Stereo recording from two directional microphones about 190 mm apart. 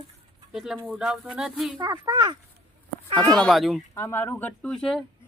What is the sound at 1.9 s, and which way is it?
Speech, 20° right (ahead or behind).